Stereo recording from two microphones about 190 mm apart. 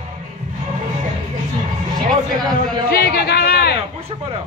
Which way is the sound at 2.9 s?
50° left (ahead or behind).